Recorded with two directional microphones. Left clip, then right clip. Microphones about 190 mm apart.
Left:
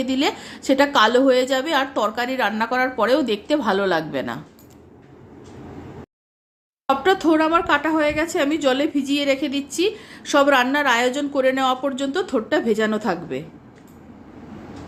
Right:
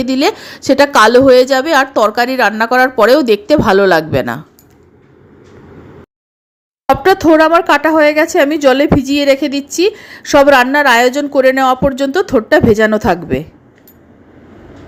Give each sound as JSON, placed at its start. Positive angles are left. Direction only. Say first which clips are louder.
{"t": 0.0, "sound": "speech", "louder": "right 8 dB", "side_deg": -30}
{"t": 6.8, "sound": "speech", "louder": "right 9 dB", "side_deg": -30}